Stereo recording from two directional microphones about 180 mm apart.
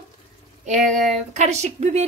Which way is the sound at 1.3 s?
40° right (ahead or behind).